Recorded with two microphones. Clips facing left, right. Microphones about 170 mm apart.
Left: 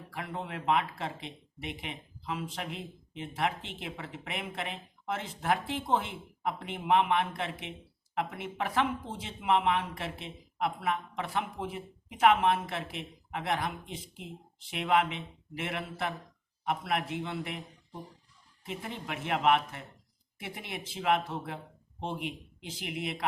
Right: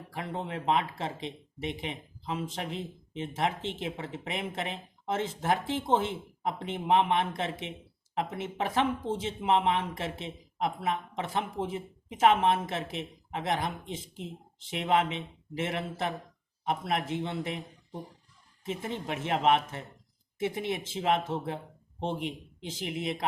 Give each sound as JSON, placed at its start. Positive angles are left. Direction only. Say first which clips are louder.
{"t": 0.1, "sound": "speech", "louder": "right 3 dB", "side_deg": -25}
{"t": 18.6, "sound": "speech", "louder": "right 5 dB", "side_deg": -25}